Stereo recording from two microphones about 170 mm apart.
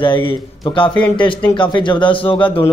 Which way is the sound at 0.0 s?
30° left (ahead or behind).